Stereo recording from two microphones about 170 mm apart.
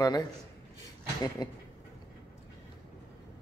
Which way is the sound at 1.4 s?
25° left (ahead or behind).